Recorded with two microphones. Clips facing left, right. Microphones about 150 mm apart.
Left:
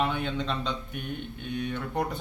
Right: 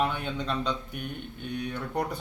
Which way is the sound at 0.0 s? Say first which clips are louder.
Left 1 dB; 5° right (ahead or behind).